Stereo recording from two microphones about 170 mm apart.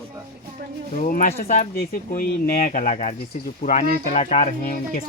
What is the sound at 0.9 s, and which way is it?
Speech, 50° left (ahead or behind).